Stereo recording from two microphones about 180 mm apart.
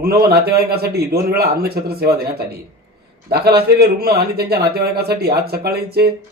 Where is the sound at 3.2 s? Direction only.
60° right (ahead or behind).